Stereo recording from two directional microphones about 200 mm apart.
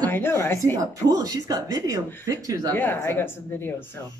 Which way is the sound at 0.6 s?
15° right (ahead or behind).